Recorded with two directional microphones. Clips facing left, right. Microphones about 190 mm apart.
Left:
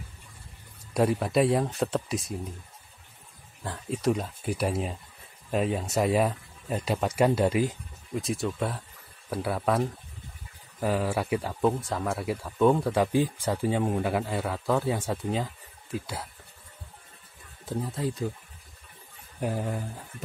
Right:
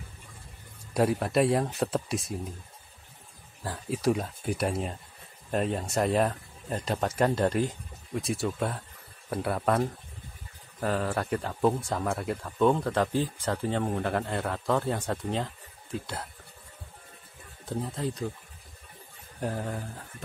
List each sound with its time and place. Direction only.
0.9 s speech: centre (ahead or behind)
3.6 s speech: centre (ahead or behind)
17.6 s speech: 5° left (ahead or behind)
19.4 s speech: 10° left (ahead or behind)